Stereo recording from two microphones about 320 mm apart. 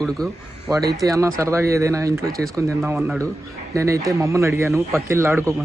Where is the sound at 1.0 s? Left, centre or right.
Centre.